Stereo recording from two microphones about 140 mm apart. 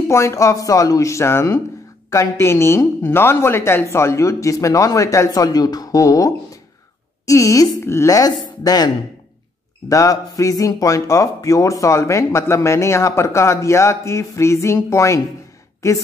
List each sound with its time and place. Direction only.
0.1 s a man's voice: 20° left (ahead or behind)